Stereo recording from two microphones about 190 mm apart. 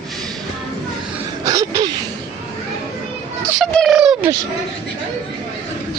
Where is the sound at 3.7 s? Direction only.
Centre (ahead or behind).